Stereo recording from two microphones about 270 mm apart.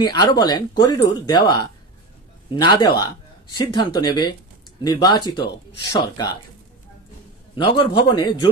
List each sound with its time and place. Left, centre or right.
0.0 s speech: centre
2.5 s speech: centre
7.5 s speech: centre